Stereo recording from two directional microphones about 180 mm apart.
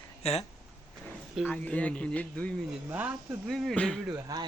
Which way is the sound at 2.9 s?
10° right (ahead or behind).